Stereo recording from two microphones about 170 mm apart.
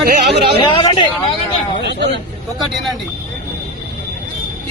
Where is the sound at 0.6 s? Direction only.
30° left (ahead or behind).